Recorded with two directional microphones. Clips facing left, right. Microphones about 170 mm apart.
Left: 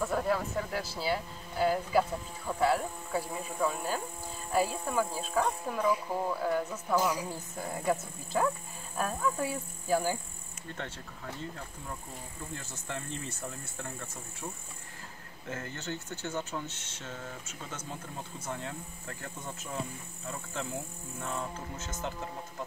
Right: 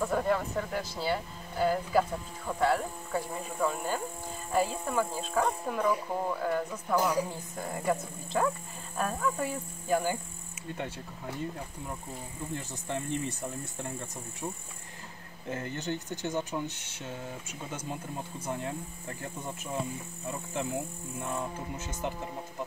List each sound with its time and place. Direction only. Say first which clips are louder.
0.0 s speech: right 2 dB; centre (ahead or behind)
12.5 s speech: right 5 dB; 20° right (ahead or behind)
15.4 s speech: right 4 dB; 15° right (ahead or behind)
21.2 s speech: right 2 dB; 15° right (ahead or behind)